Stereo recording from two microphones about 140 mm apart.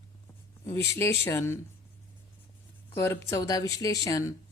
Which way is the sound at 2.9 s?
20° left (ahead or behind).